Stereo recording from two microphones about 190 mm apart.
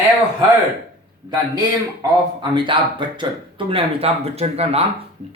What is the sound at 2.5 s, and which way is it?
Speech, 25° right (ahead or behind).